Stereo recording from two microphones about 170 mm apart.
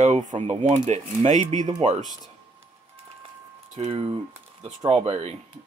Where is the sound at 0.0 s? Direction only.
45° right (ahead or behind).